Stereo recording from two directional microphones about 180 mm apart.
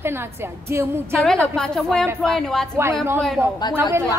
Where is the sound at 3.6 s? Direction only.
25° left (ahead or behind).